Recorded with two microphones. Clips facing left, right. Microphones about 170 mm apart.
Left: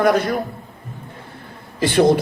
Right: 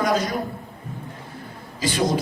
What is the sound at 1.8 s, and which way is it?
Speech, 60° left (ahead or behind).